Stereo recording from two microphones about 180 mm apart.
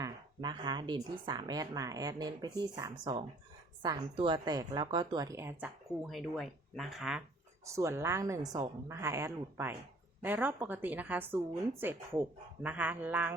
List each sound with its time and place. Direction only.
0.0 s a woman's voice: 25° right (ahead or behind); by 7.2 s centre (ahead or behind)
7.6 s a woman's voice: 15° right (ahead or behind)